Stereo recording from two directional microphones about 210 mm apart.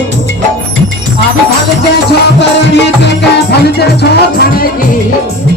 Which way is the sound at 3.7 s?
50° left (ahead or behind).